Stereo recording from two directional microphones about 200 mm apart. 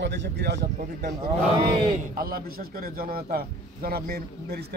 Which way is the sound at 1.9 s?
45° right (ahead or behind).